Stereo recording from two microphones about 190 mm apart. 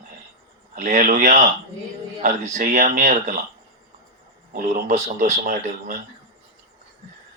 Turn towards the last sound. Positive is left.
turn(degrees=-40)  # may be behind; listen again after turning